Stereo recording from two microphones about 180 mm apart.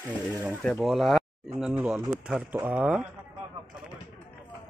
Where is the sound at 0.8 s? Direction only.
Centre (ahead or behind).